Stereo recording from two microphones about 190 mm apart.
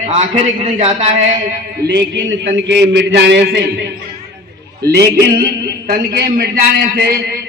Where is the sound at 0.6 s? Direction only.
35° right (ahead or behind).